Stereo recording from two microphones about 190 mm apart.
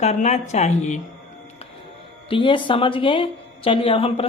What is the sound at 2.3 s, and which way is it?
A woman's voice, 25° left (ahead or behind).